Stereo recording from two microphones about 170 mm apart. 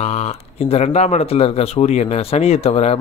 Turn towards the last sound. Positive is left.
turn(degrees=40)  # may be behind; listen again after turning